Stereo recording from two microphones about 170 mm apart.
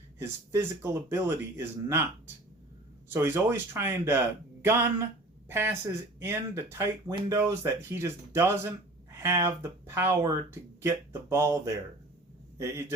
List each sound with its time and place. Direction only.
0.2 s speech: 15° right (ahead or behind)
3.1 s a man's voice: 15° right (ahead or behind)